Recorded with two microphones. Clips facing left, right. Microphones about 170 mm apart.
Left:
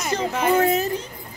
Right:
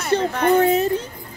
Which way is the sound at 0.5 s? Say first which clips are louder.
Right 3 dB; 30° right (ahead or behind).